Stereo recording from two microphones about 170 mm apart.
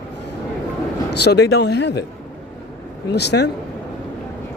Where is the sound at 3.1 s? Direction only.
80° left.